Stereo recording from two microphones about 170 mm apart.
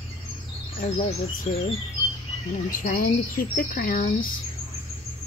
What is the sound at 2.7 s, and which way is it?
Speech, 55° left (ahead or behind).